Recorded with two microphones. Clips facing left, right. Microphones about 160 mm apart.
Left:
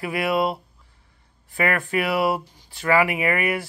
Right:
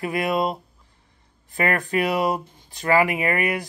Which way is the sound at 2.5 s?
55° right (ahead or behind).